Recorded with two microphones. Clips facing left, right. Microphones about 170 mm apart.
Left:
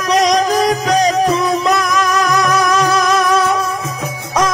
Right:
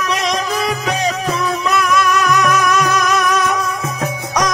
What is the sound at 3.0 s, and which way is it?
Music, 10° left (ahead or behind).